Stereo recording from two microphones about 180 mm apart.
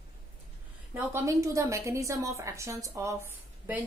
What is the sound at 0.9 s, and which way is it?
A woman's voice, 15° right (ahead or behind).